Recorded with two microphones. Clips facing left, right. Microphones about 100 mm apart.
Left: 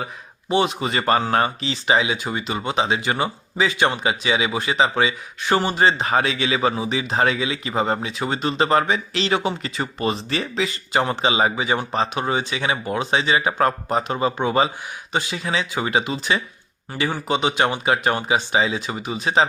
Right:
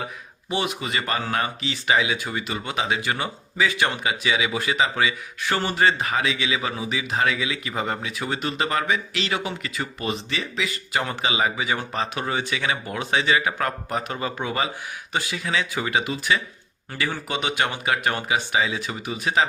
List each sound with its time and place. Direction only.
0.5 s speech: 30° left (ahead or behind)
1.7 s speech: 25° left (ahead or behind)